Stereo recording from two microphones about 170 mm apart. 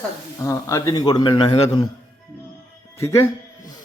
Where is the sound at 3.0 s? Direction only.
15° left (ahead or behind).